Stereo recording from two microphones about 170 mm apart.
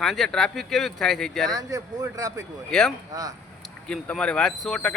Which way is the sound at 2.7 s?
5° left (ahead or behind).